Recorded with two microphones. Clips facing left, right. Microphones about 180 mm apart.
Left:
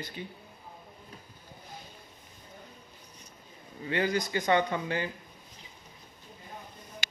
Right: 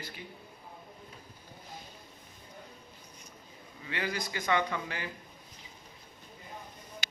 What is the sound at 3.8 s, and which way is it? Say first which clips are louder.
Speech: left 7 dB; 30° left (ahead or behind).